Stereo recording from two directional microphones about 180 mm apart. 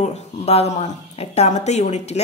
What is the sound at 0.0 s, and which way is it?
Speech, 35° left (ahead or behind).